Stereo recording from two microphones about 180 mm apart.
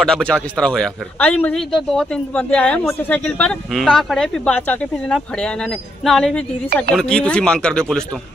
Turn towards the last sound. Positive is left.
turn(degrees=5)  # may be behind; listen again after turning